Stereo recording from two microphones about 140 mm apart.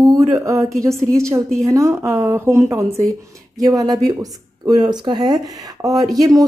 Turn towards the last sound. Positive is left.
turn(degrees=-25)  # may be behind; listen again after turning